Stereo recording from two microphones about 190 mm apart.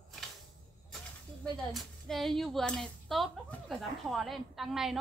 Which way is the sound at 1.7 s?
Centre (ahead or behind).